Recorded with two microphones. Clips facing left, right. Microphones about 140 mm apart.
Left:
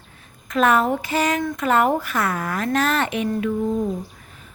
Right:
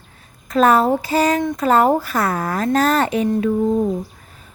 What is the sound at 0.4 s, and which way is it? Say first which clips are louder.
A woman's voice: right 4 dB; 35° right (ahead or behind).